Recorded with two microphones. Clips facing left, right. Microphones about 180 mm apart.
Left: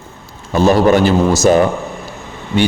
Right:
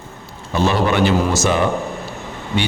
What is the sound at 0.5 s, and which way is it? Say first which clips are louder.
A man's voice: left 6 dB; 40° left (ahead or behind).